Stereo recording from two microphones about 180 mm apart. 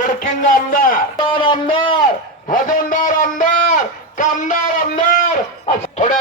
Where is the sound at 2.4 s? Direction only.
45° left (ahead or behind).